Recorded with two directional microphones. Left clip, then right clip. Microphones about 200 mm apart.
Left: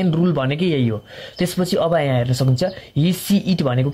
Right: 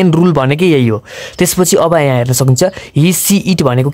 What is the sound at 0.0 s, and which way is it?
Speech, 45° right (ahead or behind).